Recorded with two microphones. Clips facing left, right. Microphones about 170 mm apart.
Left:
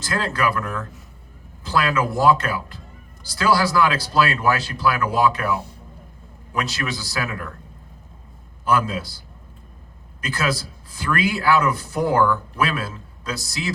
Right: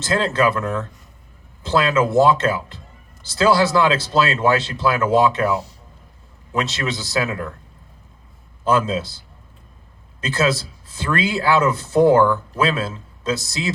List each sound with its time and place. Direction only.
0.0 s a man's voice: 25° right (ahead or behind)
8.6 s a man's voice: 25° right (ahead or behind)